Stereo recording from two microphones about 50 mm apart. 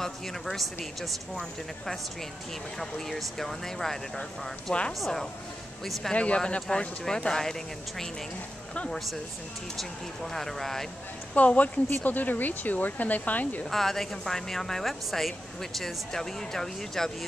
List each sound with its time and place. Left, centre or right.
0.0 s speech: centre
5.0 s speech: centre
6.1 s speech: left
9.8 s speech: centre
11.3 s speech: left
13.7 s speech: centre